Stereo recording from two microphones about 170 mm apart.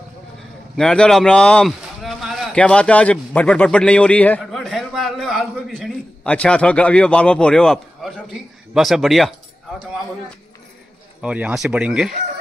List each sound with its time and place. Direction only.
0.7 s a man's voice: 5° left (ahead or behind)
11.1 s speech: 5° right (ahead or behind)